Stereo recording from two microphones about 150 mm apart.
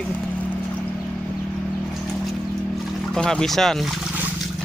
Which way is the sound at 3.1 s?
5° left (ahead or behind).